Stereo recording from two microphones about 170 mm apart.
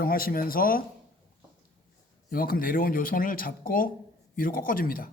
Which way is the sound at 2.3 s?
55° left (ahead or behind).